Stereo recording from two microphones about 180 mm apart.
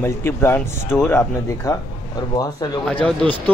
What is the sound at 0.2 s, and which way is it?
A man's voice, 15° left (ahead or behind).